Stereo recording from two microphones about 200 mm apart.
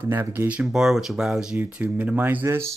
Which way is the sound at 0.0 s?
10° right (ahead or behind).